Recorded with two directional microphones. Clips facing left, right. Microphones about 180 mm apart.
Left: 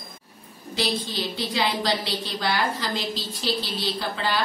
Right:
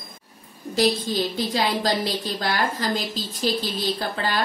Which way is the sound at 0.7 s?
45° right (ahead or behind).